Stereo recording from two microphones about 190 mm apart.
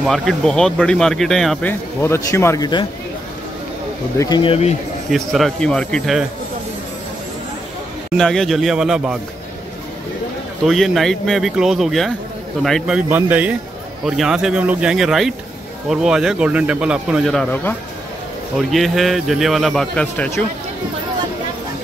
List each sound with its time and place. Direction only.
0.0 s speech: centre (ahead or behind); by 2.9 s 20° left (ahead or behind)
4.2 s speech: 25° left (ahead or behind)
5.1 s speech: centre (ahead or behind)
8.2 s speech: centre (ahead or behind)
10.7 s speech: centre (ahead or behind)